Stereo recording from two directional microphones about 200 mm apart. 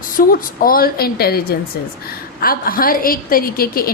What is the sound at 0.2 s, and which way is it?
A woman's voice, 45° left (ahead or behind).